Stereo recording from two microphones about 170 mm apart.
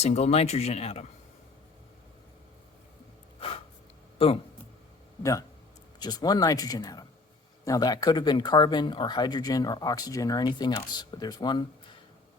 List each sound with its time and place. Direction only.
0.0 s speech: 40° left (ahead or behind)
4.2 s speech: 35° left (ahead or behind)
5.2 s speech: 20° left (ahead or behind)